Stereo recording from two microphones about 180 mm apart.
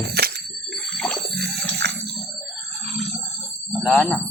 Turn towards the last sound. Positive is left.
turn(degrees=5)  # may be behind; listen again after turning